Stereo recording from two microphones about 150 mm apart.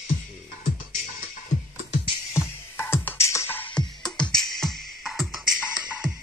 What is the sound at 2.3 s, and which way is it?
Music, 15° left (ahead or behind).